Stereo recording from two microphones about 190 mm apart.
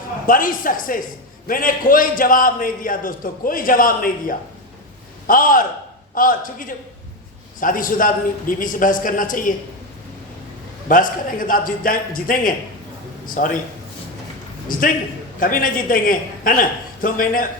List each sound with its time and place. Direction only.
0.3 s a man's voice: 45° left (ahead or behind)
10.8 s a man's voice: 45° left (ahead or behind)
14.7 s a man's voice: 45° left (ahead or behind)